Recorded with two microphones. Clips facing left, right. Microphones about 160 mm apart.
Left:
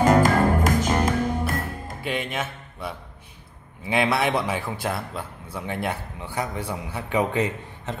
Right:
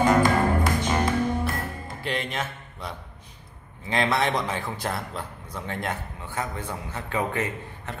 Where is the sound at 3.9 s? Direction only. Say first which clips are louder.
Left 2 dB; 10° left (ahead or behind).